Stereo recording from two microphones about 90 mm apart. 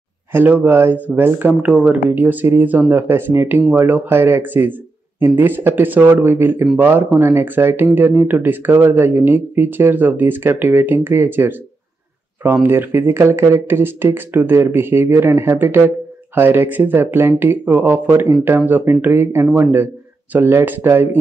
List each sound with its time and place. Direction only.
0.3 s speech: 20° right (ahead or behind)
12.6 s speech: 25° right (ahead or behind)